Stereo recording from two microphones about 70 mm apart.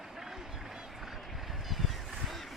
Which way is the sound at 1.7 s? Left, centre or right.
Centre.